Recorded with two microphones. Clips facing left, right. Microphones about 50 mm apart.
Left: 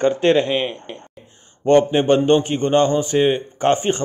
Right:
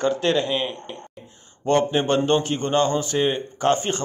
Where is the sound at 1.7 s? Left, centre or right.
Left.